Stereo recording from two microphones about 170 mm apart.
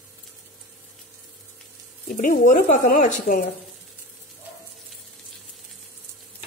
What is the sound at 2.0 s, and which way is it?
Speech, 50° left (ahead or behind).